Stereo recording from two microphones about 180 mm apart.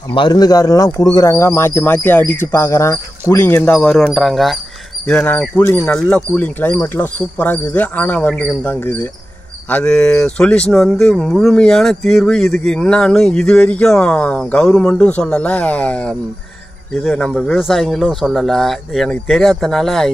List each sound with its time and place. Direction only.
0.1 s speech: 25° left (ahead or behind); by 16.2 s 5° left (ahead or behind)
17.3 s speech: centre (ahead or behind)